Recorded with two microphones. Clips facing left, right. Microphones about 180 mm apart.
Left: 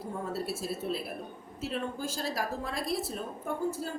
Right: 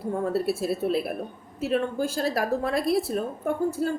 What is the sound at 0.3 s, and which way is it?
A woman's voice, 65° right (ahead or behind).